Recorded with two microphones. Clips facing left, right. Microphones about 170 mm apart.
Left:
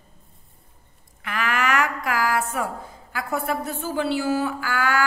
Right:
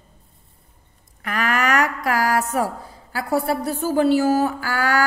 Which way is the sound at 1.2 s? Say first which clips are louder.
Right 3 dB; 40° right (ahead or behind).